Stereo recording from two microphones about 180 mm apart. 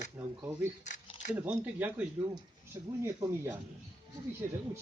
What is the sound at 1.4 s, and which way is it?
A man's voice, 10° right (ahead or behind).